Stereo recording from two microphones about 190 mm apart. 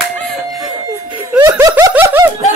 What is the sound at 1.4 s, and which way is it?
Snicker, 15° right (ahead or behind).